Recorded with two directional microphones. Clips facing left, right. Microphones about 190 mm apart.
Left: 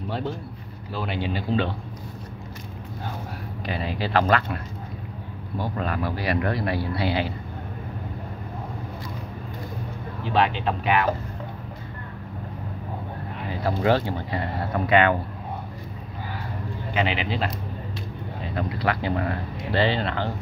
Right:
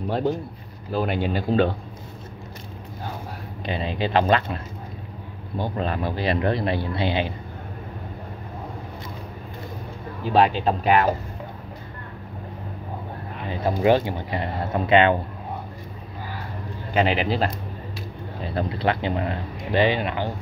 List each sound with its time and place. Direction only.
0.1 s speech: 40° right (ahead or behind)
3.6 s speech: 20° right (ahead or behind)
5.6 s speech: 25° right (ahead or behind)
10.2 s speech: 40° right (ahead or behind)
13.5 s speech: 20° right (ahead or behind)
16.9 s speech: 40° right (ahead or behind); by 20.3 s 15° right (ahead or behind)